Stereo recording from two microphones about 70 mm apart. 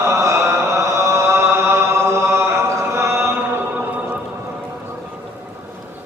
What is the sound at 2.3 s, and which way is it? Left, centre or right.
Mantra, right.